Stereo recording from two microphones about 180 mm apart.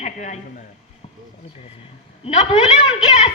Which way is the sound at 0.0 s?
40° left (ahead or behind).